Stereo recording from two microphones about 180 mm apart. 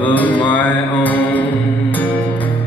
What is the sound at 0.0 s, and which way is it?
Mantra, 10° left (ahead or behind).